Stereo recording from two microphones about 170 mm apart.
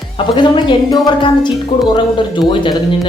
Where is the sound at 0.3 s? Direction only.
30° left (ahead or behind).